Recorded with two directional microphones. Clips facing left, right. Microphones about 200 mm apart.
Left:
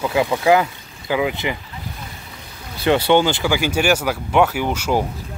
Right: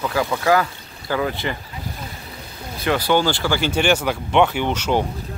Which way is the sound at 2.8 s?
25° left (ahead or behind).